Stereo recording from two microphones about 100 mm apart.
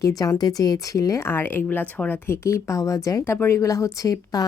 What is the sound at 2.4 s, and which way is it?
Speech, 30° left (ahead or behind).